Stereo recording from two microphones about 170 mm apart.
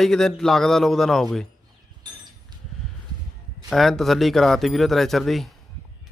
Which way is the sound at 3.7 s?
Centre (ahead or behind).